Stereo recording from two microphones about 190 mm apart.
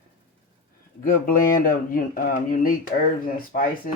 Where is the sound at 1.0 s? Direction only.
45° left (ahead or behind).